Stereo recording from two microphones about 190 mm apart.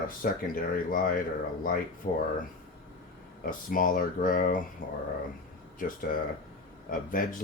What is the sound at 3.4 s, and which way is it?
Speech, 45° left (ahead or behind).